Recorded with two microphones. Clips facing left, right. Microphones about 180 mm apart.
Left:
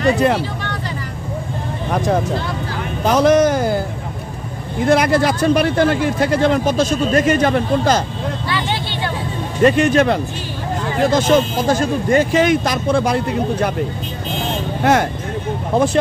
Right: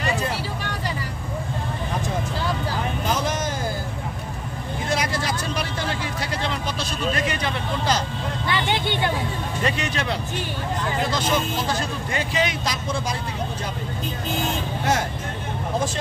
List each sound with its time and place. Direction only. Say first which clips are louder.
1.9 s vehicle: left 13 dB; 75° left (ahead or behind)
3.1 s a sound: left 16 dB; 70° left (ahead or behind)
4.8 s speech: left 12 dB; 55° left (ahead or behind)
8.5 s vehicle: even; 20° right (ahead or behind)
9.6 s speech: left 15 dB; 50° left (ahead or behind)
14.8 s speech: left 10 dB; 65° left (ahead or behind)